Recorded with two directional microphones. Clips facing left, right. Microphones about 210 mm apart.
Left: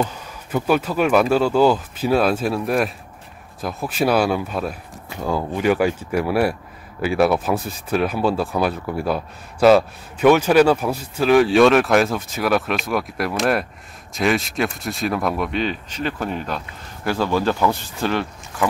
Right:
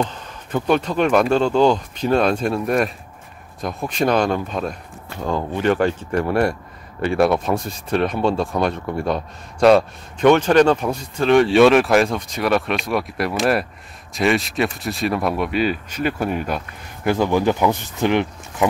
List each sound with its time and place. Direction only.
0.0 s speech: 10° left (ahead or behind); by 18.7 s 20° right (ahead or behind)